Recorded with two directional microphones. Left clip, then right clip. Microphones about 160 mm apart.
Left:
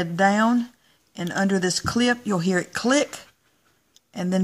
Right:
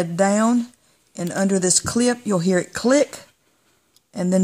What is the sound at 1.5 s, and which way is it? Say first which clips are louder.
Speech: right 3 dB; 60° right (ahead or behind).